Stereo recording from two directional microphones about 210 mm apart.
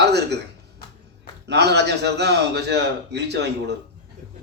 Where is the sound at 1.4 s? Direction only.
55° right (ahead or behind).